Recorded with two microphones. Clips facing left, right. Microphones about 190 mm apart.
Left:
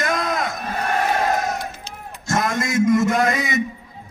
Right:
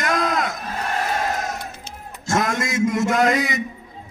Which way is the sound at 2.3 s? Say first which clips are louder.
Right 1 dB; 50° right (ahead or behind).